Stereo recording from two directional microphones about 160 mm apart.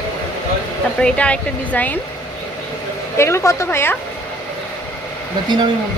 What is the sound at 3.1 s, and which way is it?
Speech, 15° left (ahead or behind).